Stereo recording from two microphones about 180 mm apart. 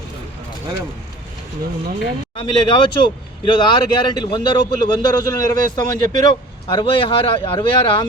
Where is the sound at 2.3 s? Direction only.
25° left (ahead or behind).